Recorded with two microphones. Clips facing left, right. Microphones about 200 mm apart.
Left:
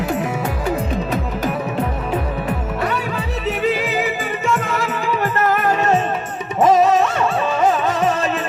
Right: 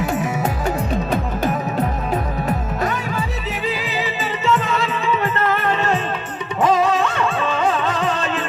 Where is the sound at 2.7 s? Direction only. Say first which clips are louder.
Left 1 dB; 65° left (ahead or behind).